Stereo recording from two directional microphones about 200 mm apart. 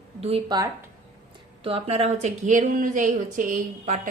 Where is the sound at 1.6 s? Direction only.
30° right (ahead or behind).